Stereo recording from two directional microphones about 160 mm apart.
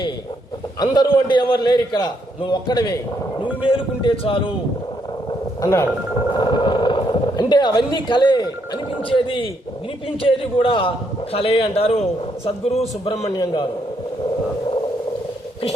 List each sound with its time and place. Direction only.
0.8 s a man's voice: 25° left (ahead or behind)
5.6 s speech: 15° left (ahead or behind)
6.3 s a man's voice: 30° left (ahead or behind)
13.2 s a man's voice: 25° left (ahead or behind)